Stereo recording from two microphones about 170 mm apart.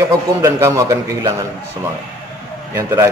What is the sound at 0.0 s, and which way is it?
A man's voice, 15° right (ahead or behind).